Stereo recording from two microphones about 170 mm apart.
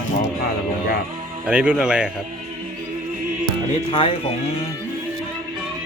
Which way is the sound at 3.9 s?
35° left (ahead or behind).